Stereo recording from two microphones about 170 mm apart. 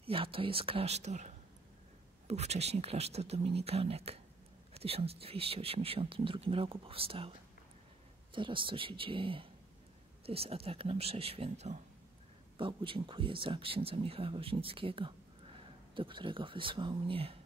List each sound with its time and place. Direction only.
0.0 s speech: 30° right (ahead or behind)
12.5 s speech: 30° right (ahead or behind)